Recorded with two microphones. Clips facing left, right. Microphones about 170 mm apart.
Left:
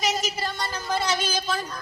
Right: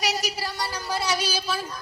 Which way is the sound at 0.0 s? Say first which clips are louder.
Left 1 dB; 70° right (ahead or behind).